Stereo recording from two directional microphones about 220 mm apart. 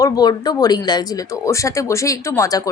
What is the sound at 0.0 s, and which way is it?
A woman's voice, 20° left (ahead or behind).